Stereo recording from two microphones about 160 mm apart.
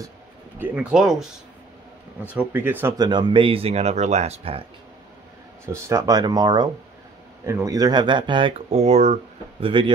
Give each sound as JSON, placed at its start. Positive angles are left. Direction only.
{"t": 0.6, "sound": "speech", "side_deg": -5}
{"t": 3.0, "sound": "speech", "side_deg": -25}
{"t": 5.7, "sound": "speech", "side_deg": -15}